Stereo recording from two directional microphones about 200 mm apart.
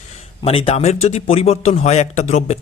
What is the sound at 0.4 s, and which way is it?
Speech, 30° left (ahead or behind).